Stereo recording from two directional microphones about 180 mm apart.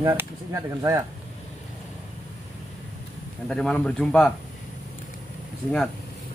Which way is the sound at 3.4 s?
5° left (ahead or behind).